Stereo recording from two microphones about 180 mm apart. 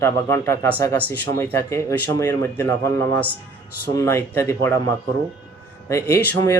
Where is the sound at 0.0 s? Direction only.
15° left (ahead or behind).